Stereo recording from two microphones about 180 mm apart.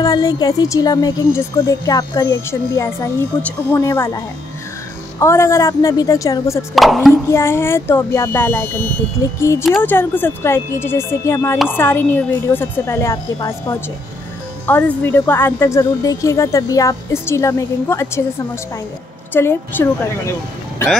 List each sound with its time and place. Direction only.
0.0 s speech: 20° left (ahead or behind)
5.2 s speech: 15° left (ahead or behind)
6.7 s speech: centre (ahead or behind)
7.2 s speech: 15° left (ahead or behind)
9.6 s speech: centre (ahead or behind)
9.8 s speech: 10° left (ahead or behind)
19.3 s speech: 10° left (ahead or behind)